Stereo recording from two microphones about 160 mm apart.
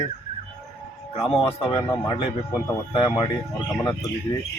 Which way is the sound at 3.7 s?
20° left (ahead or behind).